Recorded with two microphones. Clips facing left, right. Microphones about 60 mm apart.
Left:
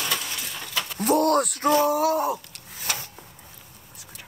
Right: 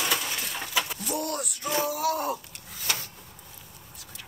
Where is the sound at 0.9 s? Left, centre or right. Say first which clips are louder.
Left 11 dB; left.